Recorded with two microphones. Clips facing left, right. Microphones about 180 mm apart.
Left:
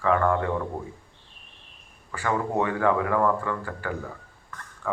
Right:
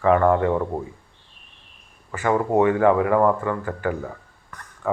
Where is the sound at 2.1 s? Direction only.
20° right (ahead or behind).